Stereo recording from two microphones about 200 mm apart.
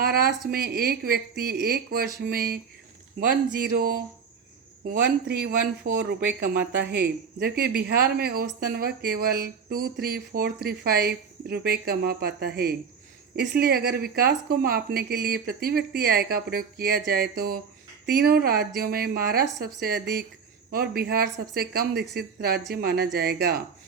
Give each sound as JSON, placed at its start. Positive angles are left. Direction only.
{"t": 0.0, "sound": "speech", "side_deg": -50}
{"t": 3.6, "sound": "speech", "side_deg": -50}